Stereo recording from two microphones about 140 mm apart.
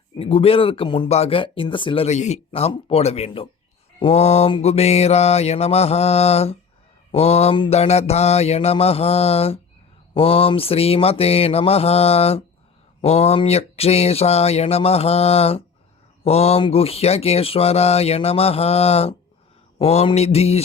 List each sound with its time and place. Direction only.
0.2 s speech: 40° left (ahead or behind)
2.5 s speech: 45° left (ahead or behind)